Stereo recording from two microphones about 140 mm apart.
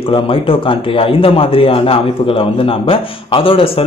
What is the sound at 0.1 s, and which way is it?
Speech, 40° left (ahead or behind).